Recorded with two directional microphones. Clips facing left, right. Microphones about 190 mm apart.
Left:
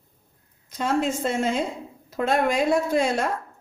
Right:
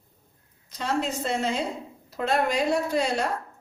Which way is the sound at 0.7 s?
50° left (ahead or behind).